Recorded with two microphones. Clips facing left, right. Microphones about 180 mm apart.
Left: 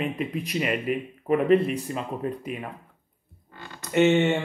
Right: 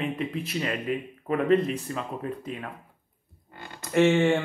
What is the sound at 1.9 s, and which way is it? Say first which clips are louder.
Speech: left 2 dB; 20° left (ahead or behind).